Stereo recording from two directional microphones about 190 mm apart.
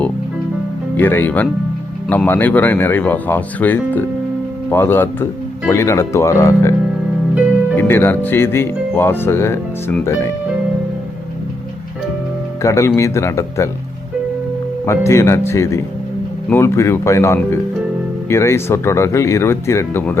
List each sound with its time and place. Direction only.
0.9 s speech: 10° left (ahead or behind)
7.8 s speech: 10° left (ahead or behind)
12.6 s speech: 15° left (ahead or behind)
14.8 s speech: 15° left (ahead or behind)